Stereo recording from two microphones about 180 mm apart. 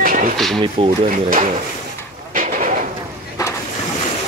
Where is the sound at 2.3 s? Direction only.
45° right (ahead or behind).